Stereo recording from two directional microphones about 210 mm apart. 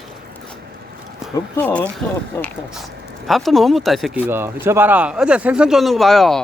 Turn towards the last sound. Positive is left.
turn(degrees=0)  # may be behind; listen again after turning